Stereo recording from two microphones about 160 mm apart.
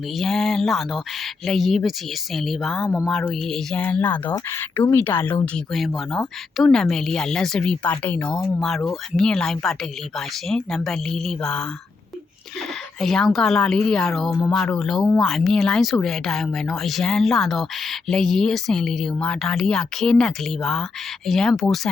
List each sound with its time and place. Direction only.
0.2 s speech: centre (ahead or behind)
5.7 s speech: centre (ahead or behind)
13.0 s speech: centre (ahead or behind)